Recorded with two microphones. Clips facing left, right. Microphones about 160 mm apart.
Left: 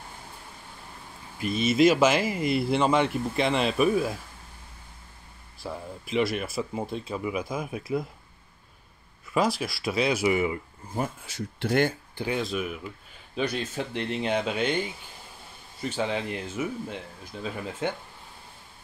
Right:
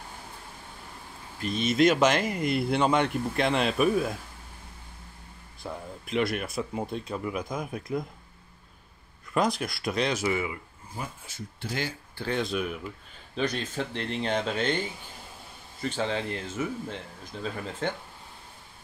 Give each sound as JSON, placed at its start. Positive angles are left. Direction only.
{"t": 1.4, "sound": "speech", "side_deg": 5}
{"t": 5.6, "sound": "speech", "side_deg": 5}
{"t": 9.3, "sound": "speech", "side_deg": 5}
{"t": 11.2, "sound": "speech", "side_deg": 75}
{"t": 12.4, "sound": "speech", "side_deg": 0}
{"t": 15.8, "sound": "speech", "side_deg": 10}